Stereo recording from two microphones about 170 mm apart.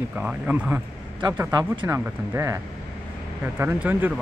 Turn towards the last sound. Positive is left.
turn(degrees=-10)  # may be behind; listen again after turning